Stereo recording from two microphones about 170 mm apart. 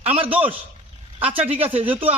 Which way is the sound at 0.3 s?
10° right (ahead or behind).